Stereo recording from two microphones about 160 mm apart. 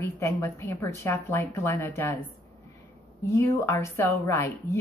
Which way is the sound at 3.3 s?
20° left (ahead or behind).